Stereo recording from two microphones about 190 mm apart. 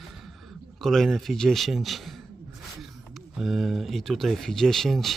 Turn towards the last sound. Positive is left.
turn(degrees=0)  # may be behind; listen again after turning